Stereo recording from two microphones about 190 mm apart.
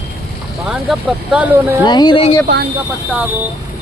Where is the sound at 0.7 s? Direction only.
5° right (ahead or behind).